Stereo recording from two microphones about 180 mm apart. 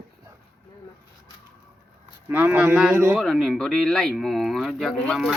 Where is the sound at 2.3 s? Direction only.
10° right (ahead or behind).